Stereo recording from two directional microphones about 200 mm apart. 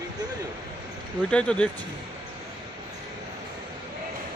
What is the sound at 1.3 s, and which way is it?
Speech, 5° left (ahead or behind).